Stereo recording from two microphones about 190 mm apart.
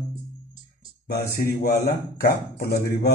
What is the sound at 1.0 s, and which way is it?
Speech, 50° left (ahead or behind).